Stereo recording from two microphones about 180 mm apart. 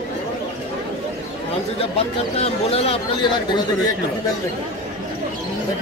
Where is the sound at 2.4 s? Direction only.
35° left (ahead or behind).